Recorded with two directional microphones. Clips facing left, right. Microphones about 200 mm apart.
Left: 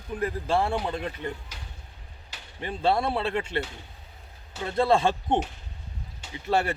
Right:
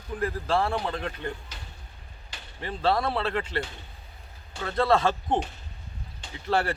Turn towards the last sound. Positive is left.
turn(degrees=20)  # may be behind; listen again after turning